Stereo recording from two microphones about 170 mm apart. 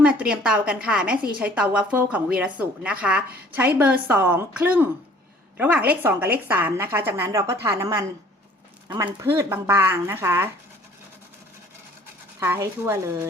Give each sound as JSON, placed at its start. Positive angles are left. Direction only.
{"t": 0.0, "sound": "a woman's voice", "side_deg": -5}
{"t": 8.9, "sound": "speech", "side_deg": -30}
{"t": 9.2, "sound": "a woman's voice", "side_deg": -15}
{"t": 12.4, "sound": "a woman's voice", "side_deg": -15}